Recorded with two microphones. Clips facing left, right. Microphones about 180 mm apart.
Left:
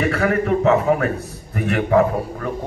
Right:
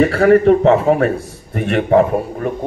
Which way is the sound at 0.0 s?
30° right (ahead or behind).